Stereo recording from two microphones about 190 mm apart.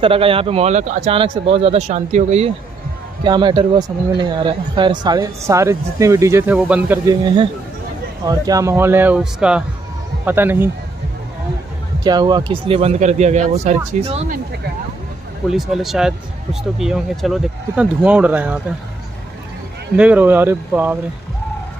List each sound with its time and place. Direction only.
0.0 s speech: 30° right (ahead or behind)
1.1 s speech: 25° right (ahead or behind)
3.3 s speech: 25° right (ahead or behind); by 7.0 s 10° right (ahead or behind)
8.3 s speech: 20° right (ahead or behind)
12.0 s speech: 20° right (ahead or behind); by 14.1 s 40° right (ahead or behind)
15.5 s speech: centre (ahead or behind)
20.0 s speech: 10° right (ahead or behind)